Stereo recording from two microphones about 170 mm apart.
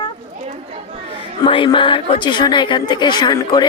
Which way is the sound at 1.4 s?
30° left (ahead or behind).